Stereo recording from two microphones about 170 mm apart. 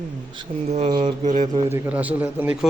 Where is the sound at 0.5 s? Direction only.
55° right (ahead or behind).